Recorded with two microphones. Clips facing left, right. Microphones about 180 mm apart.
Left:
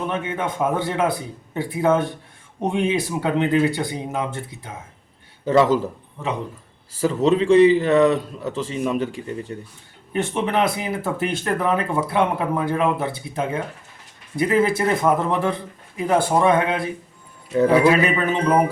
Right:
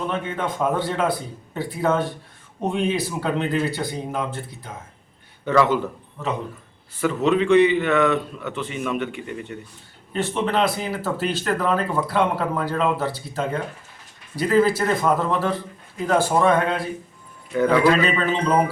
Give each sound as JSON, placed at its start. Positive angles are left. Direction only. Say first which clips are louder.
{"t": 0.1, "sound": "speech", "louder": "left 1 dB", "side_deg": 15}
{"t": 5.5, "sound": "a man's voice", "louder": "left 2 dB", "side_deg": 35}
{"t": 7.0, "sound": "a man's voice", "louder": "left 2 dB", "side_deg": 30}
{"t": 10.1, "sound": "speech", "louder": "left 1 dB", "side_deg": 15}
{"t": 17.5, "sound": "speech", "louder": "left 2 dB", "side_deg": 30}
{"t": 17.7, "sound": "speech", "louder": "left 2 dB", "side_deg": 10}